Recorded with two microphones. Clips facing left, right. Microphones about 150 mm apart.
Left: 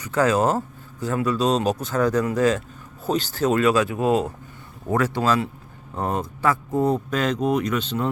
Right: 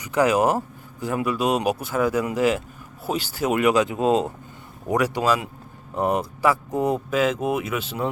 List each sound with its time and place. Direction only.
0.0 s speech: 15° right (ahead or behind)